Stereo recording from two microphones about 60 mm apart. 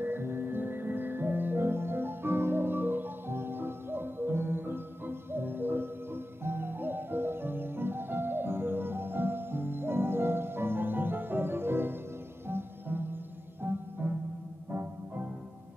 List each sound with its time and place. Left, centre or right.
0.0 s music: right